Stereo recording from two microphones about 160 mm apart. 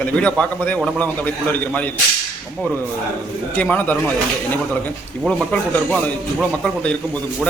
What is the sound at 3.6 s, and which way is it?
Speech, 10° left (ahead or behind).